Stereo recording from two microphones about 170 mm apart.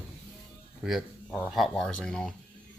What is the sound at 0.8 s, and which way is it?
Speech, centre (ahead or behind).